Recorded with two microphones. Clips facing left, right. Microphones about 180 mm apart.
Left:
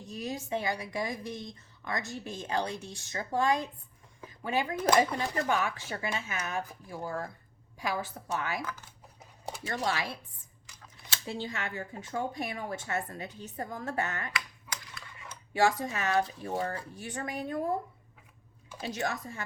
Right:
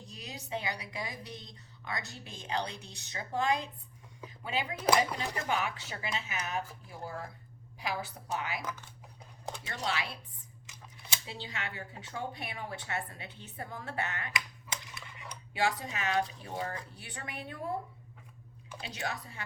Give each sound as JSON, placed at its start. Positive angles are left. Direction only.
{"t": 0.0, "sound": "a woman's voice", "side_deg": 45}
{"t": 7.8, "sound": "a woman's voice", "side_deg": 45}
{"t": 9.6, "sound": "a woman's voice", "side_deg": 45}
{"t": 11.3, "sound": "a woman's voice", "side_deg": 45}
{"t": 14.3, "sound": "typewriter", "side_deg": -20}
{"t": 15.5, "sound": "a woman's voice", "side_deg": 45}
{"t": 18.8, "sound": "a woman's voice", "side_deg": 45}